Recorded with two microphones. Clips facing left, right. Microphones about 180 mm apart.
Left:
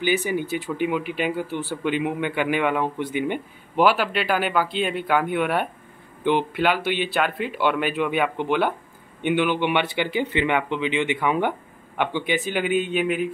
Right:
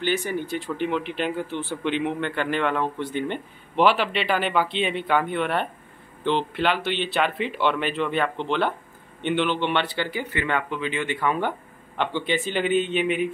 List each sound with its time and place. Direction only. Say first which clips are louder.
0.0 s a man's voice: left 2 dB; 5° left (ahead or behind)